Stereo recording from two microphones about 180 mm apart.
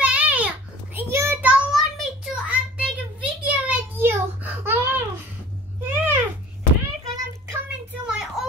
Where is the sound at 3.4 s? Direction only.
10° right (ahead or behind).